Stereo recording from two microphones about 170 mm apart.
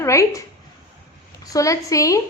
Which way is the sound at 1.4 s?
20° left (ahead or behind).